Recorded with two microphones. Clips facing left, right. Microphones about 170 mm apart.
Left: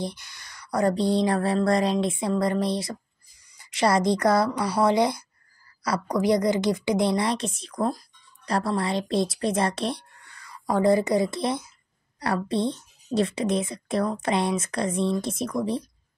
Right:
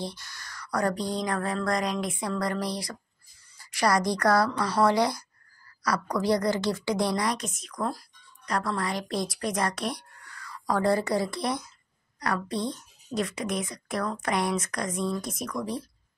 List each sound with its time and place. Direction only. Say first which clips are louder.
0.0 s a woman's voice: left 4 dB; 20° left (ahead or behind)